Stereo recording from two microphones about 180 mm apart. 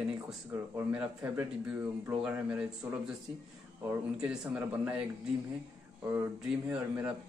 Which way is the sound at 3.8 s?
5° right (ahead or behind).